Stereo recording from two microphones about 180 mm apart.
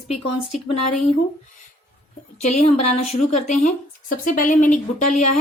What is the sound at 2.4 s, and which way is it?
Speech, 40° left (ahead or behind).